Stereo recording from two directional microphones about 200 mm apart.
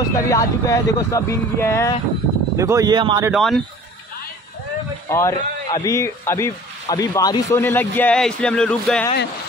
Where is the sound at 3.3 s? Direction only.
Centre (ahead or behind).